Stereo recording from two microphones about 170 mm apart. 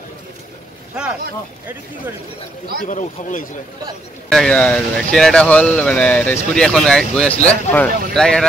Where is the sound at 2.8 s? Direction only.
50° left (ahead or behind).